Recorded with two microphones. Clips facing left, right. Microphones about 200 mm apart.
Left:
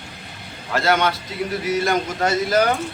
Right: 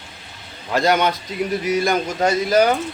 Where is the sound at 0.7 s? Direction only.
15° right (ahead or behind).